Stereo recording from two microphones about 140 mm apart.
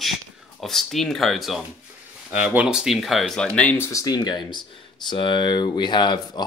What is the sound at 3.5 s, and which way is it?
Speech, 15° left (ahead or behind).